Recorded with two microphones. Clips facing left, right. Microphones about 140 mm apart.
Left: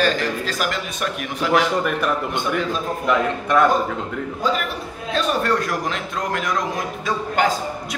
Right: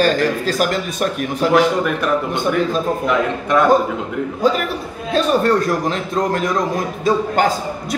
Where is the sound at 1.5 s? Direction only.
Centre (ahead or behind).